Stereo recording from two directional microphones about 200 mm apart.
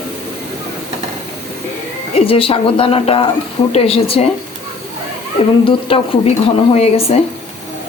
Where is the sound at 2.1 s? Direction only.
30° left (ahead or behind).